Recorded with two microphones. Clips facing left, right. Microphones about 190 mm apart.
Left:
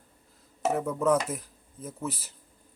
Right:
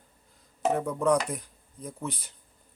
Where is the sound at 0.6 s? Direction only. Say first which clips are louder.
Even; 5° left (ahead or behind).